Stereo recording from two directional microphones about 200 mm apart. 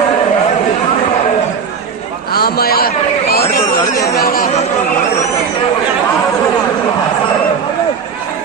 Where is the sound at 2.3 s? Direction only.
50° left (ahead or behind).